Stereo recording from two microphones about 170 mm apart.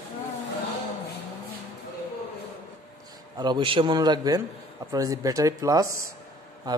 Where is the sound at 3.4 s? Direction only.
30° right (ahead or behind).